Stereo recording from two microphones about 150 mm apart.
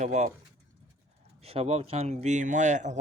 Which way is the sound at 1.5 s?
45° right (ahead or behind).